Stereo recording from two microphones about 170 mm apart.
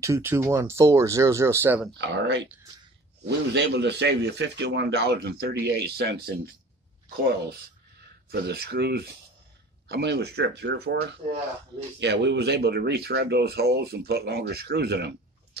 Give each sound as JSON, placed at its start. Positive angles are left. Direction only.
{"t": 0.0, "sound": "speech", "side_deg": -15}
{"t": 2.0, "sound": "speech", "side_deg": -90}
{"t": 8.3, "sound": "speech", "side_deg": -70}
{"t": 12.0, "sound": "speech", "side_deg": -90}